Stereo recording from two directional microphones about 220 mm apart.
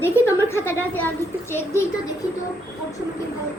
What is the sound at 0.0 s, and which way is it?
A child's voice, 10° left (ahead or behind).